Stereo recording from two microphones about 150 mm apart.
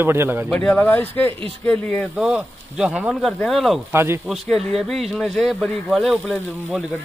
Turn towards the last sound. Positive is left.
turn(degrees=-5)  # may be behind; listen again after turning